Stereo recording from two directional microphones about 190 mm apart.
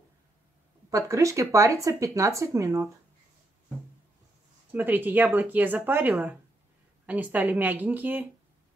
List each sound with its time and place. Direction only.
0.8 s speech: 15° right (ahead or behind)
4.7 s speech: 10° right (ahead or behind)